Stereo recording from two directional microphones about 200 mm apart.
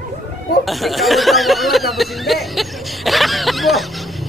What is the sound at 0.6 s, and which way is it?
Speech, centre (ahead or behind).